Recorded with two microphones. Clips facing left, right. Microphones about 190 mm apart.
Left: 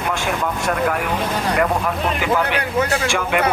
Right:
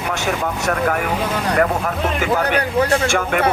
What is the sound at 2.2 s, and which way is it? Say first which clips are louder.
A man's voice: right 2 dB; 40° right (ahead or behind).